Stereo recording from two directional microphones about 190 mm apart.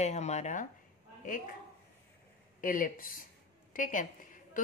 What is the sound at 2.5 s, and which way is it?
A woman's voice, 45° left (ahead or behind).